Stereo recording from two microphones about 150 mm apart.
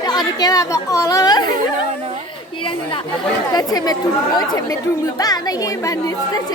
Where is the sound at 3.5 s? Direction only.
25° left (ahead or behind).